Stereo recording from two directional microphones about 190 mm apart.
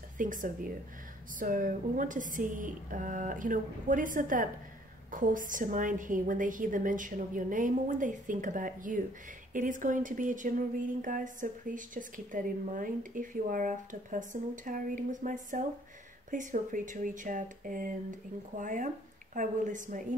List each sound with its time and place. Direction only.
0.2 s a woman's voice: 45° right (ahead or behind)